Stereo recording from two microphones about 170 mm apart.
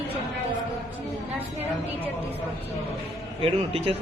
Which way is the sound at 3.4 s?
35° right (ahead or behind).